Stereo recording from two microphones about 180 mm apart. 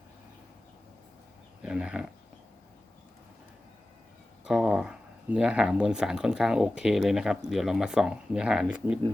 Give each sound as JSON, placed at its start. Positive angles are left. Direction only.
{"t": 1.6, "sound": "speech", "side_deg": -5}
{"t": 4.4, "sound": "speech", "side_deg": -5}